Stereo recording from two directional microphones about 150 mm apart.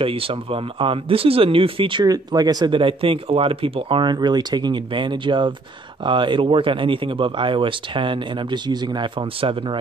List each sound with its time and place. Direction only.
0.0 s a man's voice: 35° right (ahead or behind)